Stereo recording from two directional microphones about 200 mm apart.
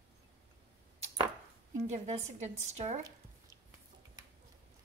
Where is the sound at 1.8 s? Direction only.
35° right (ahead or behind).